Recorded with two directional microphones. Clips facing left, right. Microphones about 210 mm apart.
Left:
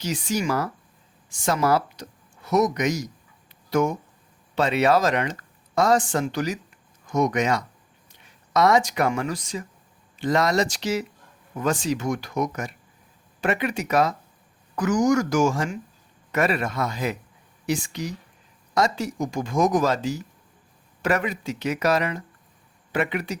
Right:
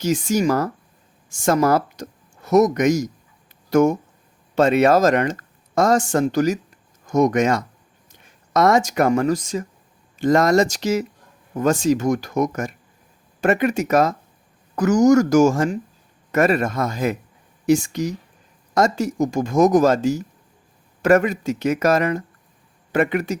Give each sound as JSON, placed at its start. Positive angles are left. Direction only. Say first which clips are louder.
{"t": 0.0, "sound": "speech", "louder": "right 7 dB", "side_deg": -45}